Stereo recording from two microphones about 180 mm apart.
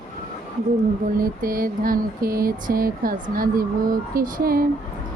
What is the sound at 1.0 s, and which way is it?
Mantra, 50° right (ahead or behind).